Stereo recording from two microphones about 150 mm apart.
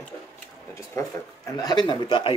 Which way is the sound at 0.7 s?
20° left (ahead or behind).